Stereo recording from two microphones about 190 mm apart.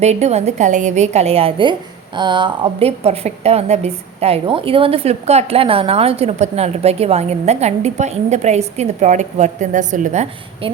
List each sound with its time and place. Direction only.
0.0 s a woman's voice: 35° right (ahead or behind)